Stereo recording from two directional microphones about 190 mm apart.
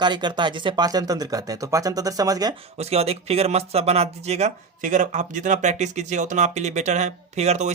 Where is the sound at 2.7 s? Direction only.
35° right (ahead or behind).